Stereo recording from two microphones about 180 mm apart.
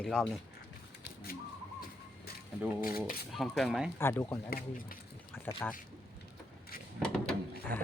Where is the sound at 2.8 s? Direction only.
50° left (ahead or behind).